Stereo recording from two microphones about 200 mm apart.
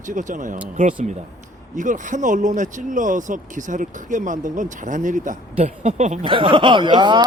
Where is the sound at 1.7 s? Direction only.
40° right (ahead or behind).